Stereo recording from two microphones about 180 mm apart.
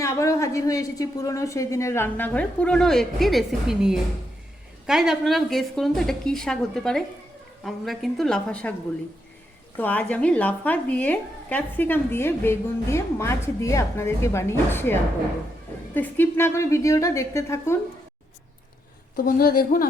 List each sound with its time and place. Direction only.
0.0 s a woman's voice: 15° left (ahead or behind)
9.7 s speech: 10° left (ahead or behind)
16.0 s speech: 10° left (ahead or behind)
19.1 s a woman's voice: 55° left (ahead or behind)